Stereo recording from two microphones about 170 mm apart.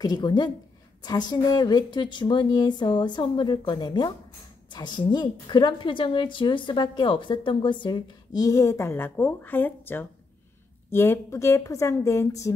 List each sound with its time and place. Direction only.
0.0 s a woman's voice: 25° left (ahead or behind)